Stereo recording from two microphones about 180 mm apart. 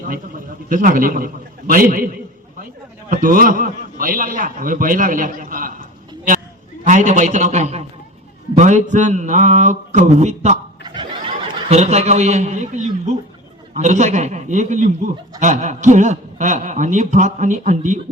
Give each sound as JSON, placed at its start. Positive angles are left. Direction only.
{"t": 0.1, "sound": "a man's voice", "side_deg": -50}
{"t": 3.1, "sound": "a man's voice", "side_deg": -50}
{"t": 6.8, "sound": "a man's voice", "side_deg": -45}
{"t": 10.8, "sound": "a sound", "side_deg": -25}
{"t": 11.7, "sound": "speech", "side_deg": -35}